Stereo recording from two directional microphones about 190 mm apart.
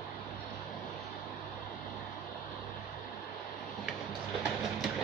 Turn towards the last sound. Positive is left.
turn(degrees=0)  # may be behind; listen again after turning